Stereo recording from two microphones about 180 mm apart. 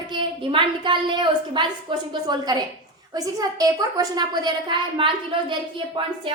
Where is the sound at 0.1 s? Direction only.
25° right (ahead or behind).